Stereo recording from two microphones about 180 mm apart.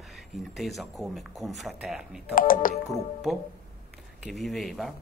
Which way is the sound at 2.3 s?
50° left (ahead or behind).